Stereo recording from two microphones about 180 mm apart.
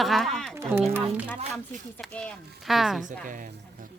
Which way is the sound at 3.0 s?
45° right (ahead or behind).